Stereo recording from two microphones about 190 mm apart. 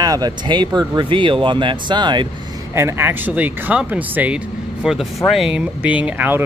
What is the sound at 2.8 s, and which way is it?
Speech, 15° right (ahead or behind).